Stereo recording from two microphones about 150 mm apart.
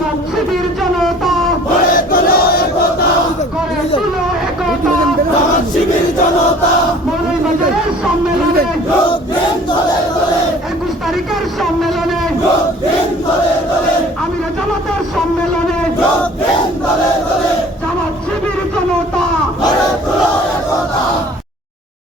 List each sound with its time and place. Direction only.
2.0 s battle cry: 75° left (ahead or behind)